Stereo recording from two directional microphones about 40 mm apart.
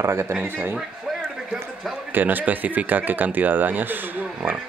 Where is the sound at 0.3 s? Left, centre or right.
Right.